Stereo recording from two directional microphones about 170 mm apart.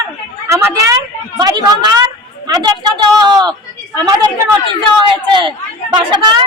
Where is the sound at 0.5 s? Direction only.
20° right (ahead or behind).